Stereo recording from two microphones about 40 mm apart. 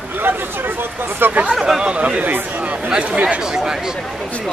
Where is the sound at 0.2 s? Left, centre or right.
Right.